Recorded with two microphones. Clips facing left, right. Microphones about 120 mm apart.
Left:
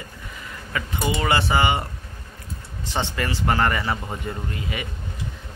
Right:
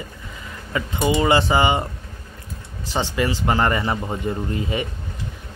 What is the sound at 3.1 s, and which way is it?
Speech, 15° right (ahead or behind).